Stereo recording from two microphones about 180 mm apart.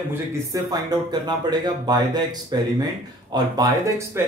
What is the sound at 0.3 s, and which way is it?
A man's voice, 20° right (ahead or behind).